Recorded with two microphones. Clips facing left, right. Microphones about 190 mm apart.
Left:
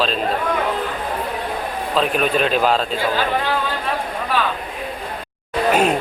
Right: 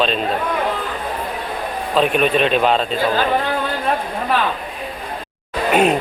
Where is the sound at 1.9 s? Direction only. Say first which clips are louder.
Right 3 dB; centre (ahead or behind).